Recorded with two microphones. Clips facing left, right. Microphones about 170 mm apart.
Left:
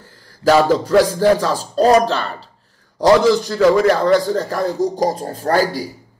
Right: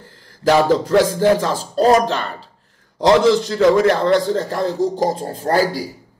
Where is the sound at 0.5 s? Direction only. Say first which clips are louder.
Left 1 dB; 20° right (ahead or behind).